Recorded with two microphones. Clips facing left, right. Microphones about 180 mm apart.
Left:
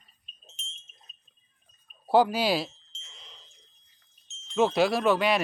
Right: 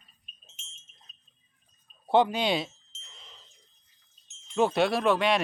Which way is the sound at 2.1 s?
5° left (ahead or behind).